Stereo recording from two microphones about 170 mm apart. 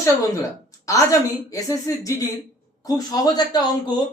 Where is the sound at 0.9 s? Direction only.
20° left (ahead or behind).